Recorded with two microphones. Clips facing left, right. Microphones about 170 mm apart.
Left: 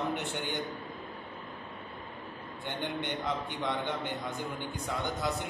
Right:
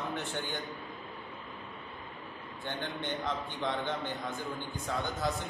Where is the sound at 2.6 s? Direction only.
15° left (ahead or behind).